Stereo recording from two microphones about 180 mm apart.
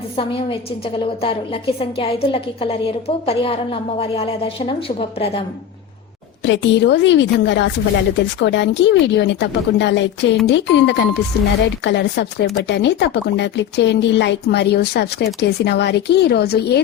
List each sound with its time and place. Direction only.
1.2 s a woman's voice: 30° left (ahead or behind)
6.4 s a woman's voice: 80° left; by 16.8 s 65° left (ahead or behind)